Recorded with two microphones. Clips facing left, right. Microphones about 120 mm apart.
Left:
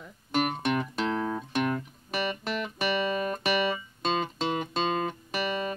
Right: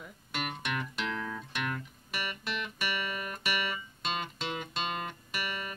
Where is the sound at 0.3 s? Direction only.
40° left (ahead or behind).